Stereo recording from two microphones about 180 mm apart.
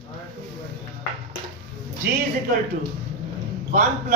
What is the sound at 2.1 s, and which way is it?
Speech, 65° right (ahead or behind).